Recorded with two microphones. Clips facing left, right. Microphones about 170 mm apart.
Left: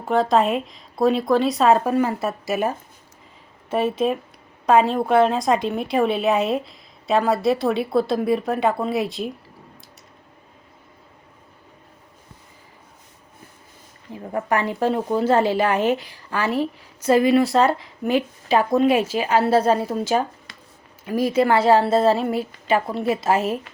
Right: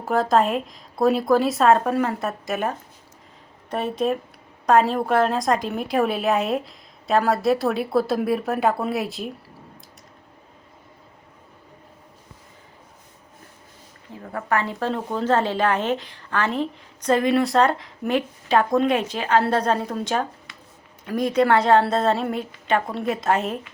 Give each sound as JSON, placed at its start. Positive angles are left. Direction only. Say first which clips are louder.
{"t": 0.0, "sound": "a woman's voice", "louder": "left 1 dB", "side_deg": 0}
{"t": 14.2, "sound": "speech", "louder": "left 2 dB", "side_deg": 20}
{"t": 20.5, "sound": "a sound", "louder": "even", "side_deg": 35}
{"t": 21.0, "sound": "a woman's voice", "louder": "left 1 dB", "side_deg": 5}